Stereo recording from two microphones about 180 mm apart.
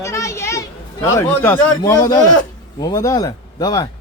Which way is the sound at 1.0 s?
15° left (ahead or behind).